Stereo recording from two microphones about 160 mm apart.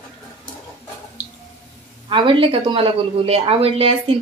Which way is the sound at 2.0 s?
30° right (ahead or behind).